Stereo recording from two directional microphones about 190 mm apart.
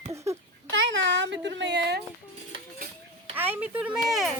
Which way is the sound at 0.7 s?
75° right (ahead or behind).